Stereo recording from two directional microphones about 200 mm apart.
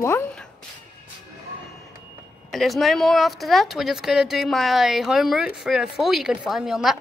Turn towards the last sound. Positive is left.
turn(degrees=0)  # may be behind; listen again after turning